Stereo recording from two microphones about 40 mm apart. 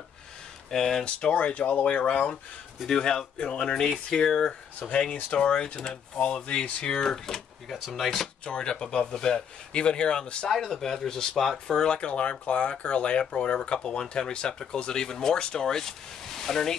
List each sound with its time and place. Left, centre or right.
0.7 s speech: centre
1.0 s speech: left
5.1 s speech: left
5.5 s speech: left; by 8.3 s centre
8.5 s speech: left
10.7 s speech: centre
11.7 s speech: left